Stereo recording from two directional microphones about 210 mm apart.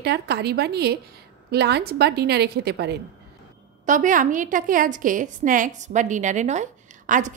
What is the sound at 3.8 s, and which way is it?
A woman's voice, 40° right (ahead or behind).